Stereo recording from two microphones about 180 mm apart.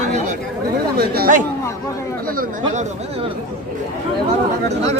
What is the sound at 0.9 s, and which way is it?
Speech, 60° right (ahead or behind).